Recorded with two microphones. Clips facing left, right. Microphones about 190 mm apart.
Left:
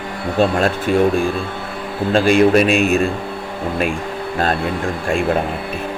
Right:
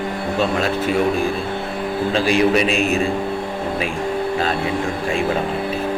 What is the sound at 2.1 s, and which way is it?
Speech, 50° left (ahead or behind).